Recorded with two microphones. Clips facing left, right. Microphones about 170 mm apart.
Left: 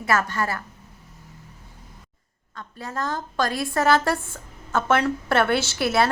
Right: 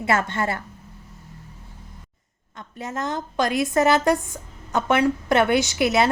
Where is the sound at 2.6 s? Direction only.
20° right (ahead or behind).